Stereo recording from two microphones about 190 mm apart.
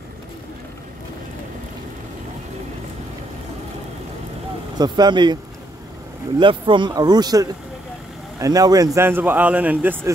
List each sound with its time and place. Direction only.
4.7 s speech: 20° right (ahead or behind)
6.4 s speech: 25° right (ahead or behind); by 10.1 s 10° right (ahead or behind)